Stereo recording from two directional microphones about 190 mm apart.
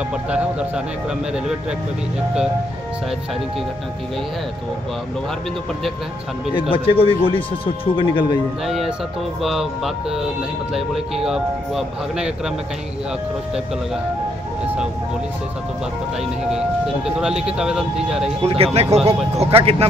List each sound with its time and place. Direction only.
0.3 s speech: 5° right (ahead or behind)
6.7 s speech: 30° left (ahead or behind)
8.6 s speech: centre (ahead or behind)
16.4 s speech: 5° right (ahead or behind)
18.4 s speech: 30° right (ahead or behind)